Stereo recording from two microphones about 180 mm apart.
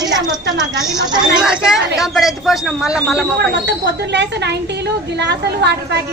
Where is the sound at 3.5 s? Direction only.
70° right (ahead or behind).